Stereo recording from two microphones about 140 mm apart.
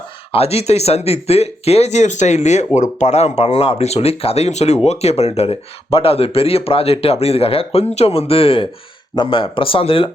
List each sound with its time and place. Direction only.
0.3 s speech: 45° left (ahead or behind)